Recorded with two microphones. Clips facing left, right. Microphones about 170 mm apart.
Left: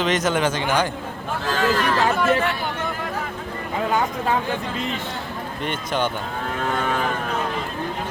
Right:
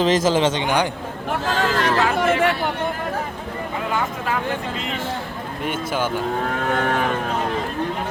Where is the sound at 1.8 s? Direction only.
70° right (ahead or behind).